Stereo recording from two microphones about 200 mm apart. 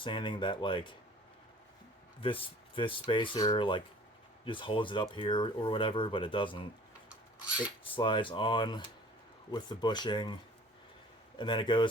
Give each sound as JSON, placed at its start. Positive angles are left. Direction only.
{"t": 0.0, "sound": "speech", "side_deg": 25}
{"t": 2.2, "sound": "speech", "side_deg": 25}
{"t": 7.9, "sound": "speech", "side_deg": 25}
{"t": 11.3, "sound": "speech", "side_deg": 25}